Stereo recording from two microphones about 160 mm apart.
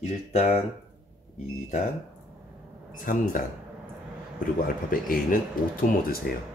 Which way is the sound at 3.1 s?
60° left (ahead or behind).